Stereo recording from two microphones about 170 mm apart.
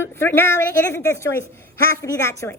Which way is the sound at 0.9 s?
15° left (ahead or behind).